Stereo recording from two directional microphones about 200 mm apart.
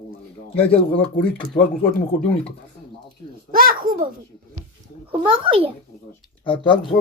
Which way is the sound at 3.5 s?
45° right (ahead or behind).